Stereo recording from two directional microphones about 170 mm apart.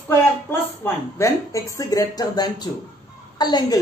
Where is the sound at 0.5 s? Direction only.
15° left (ahead or behind).